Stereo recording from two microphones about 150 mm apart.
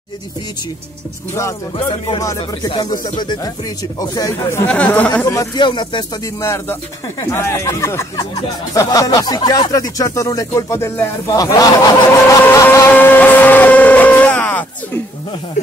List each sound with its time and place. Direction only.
2.0 s speech: 25° left (ahead or behind)
4.6 s speech: 10° left (ahead or behind)
5.3 s speech: 25° left (ahead or behind)
6.4 s speech: 20° left (ahead or behind)
12.6 s vehicle: 15° left (ahead or behind)